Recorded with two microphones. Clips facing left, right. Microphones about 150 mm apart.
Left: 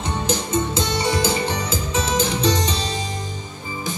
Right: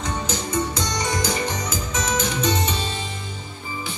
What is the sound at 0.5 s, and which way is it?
Music, 25° left (ahead or behind).